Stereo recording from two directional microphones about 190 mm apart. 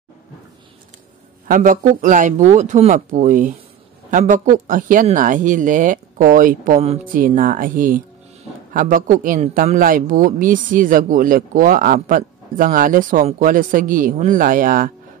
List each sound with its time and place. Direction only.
1.5 s a man's voice: 45° right (ahead or behind)